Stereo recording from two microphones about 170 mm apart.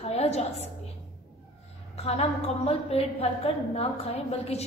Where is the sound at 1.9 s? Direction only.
40° left (ahead or behind).